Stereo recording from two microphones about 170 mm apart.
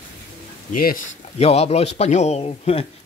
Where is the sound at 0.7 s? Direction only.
55° left (ahead or behind).